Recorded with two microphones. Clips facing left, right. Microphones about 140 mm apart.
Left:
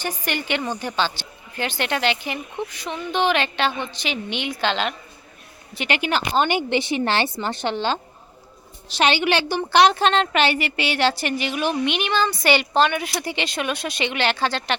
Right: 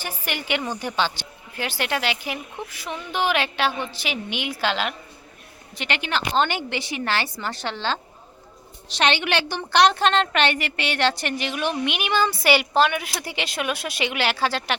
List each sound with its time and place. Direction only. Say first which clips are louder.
0.0 s speech: left 4 dB; 10° right (ahead or behind)
5.7 s a woman's voice: left 4 dB; 5° left (ahead or behind)
8.9 s a woman's voice: left 3 dB; 5° left (ahead or behind)